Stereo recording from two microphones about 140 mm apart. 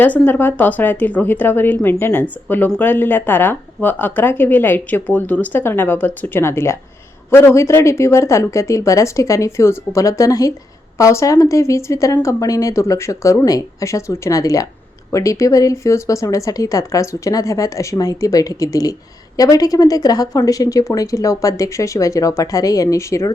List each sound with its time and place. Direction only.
0.0 s a woman's voice: 15° left (ahead or behind)